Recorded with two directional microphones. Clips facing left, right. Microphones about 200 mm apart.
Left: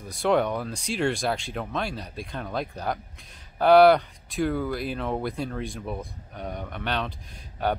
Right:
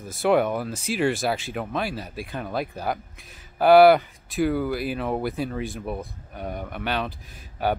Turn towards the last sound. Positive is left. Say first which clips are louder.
# right 2 dB
turn(degrees=-5)  # may be behind; listen again after turning